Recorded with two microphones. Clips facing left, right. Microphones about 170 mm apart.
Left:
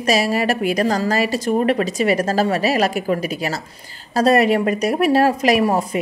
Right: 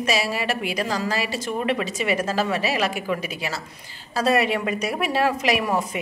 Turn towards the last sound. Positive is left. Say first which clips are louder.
# left 6 dB
turn(degrees=35)  # may be behind; listen again after turning